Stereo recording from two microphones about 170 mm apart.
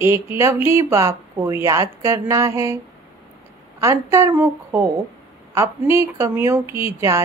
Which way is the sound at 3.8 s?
15° right (ahead or behind).